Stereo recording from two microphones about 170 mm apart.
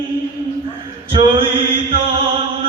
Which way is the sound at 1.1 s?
30° right (ahead or behind).